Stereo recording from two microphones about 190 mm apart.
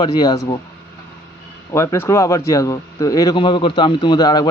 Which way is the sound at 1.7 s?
15° left (ahead or behind).